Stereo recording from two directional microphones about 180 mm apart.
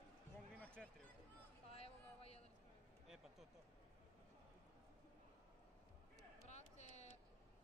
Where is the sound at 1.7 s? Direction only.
35° left (ahead or behind).